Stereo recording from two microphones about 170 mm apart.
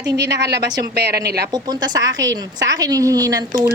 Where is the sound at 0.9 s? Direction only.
70° right (ahead or behind).